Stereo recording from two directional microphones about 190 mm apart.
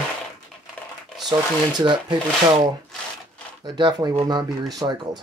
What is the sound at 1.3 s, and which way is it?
Speech, 20° right (ahead or behind).